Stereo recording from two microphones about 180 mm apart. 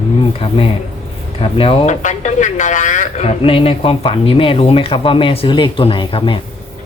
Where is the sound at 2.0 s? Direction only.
40° left (ahead or behind).